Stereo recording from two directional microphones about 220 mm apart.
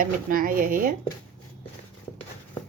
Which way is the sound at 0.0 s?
40° right (ahead or behind).